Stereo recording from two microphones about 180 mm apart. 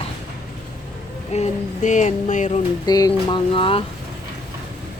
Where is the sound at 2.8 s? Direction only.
20° left (ahead or behind).